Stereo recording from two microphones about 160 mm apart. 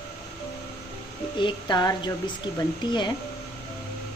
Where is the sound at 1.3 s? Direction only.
30° left (ahead or behind).